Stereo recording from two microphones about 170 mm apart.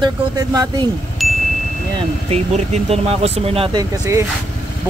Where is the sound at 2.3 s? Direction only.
40° right (ahead or behind).